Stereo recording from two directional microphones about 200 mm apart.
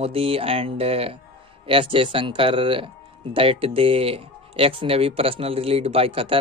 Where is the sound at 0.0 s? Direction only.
30° right (ahead or behind).